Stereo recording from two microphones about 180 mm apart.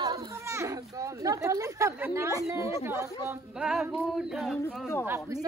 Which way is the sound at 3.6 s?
5° right (ahead or behind).